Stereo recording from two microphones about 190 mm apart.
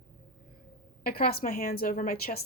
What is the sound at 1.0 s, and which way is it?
Speech, 50° left (ahead or behind).